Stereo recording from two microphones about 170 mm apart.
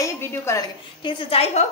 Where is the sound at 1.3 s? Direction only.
35° left (ahead or behind).